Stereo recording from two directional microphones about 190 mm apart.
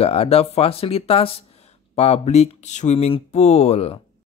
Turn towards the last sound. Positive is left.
turn(degrees=30)  # may be behind; listen again after turning